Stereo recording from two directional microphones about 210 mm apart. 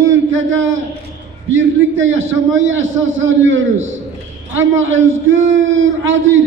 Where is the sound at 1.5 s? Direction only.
65° right (ahead or behind).